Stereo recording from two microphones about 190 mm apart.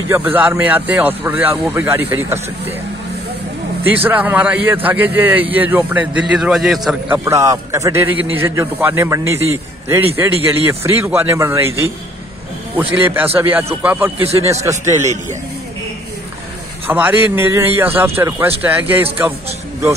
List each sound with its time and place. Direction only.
0.1 s a man's voice: 10° right (ahead or behind)
3.8 s a man's voice: 10° right (ahead or behind)
7.2 s a man's voice: 15° right (ahead or behind)
13.0 s a man's voice: 10° right (ahead or behind)
16.8 s a man's voice: 10° right (ahead or behind)